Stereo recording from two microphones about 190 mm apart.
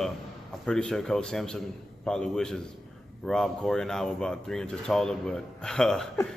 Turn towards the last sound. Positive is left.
turn(degrees=5)  # may be behind; listen again after turning